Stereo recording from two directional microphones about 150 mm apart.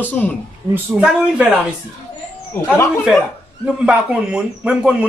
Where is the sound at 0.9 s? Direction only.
10° right (ahead or behind).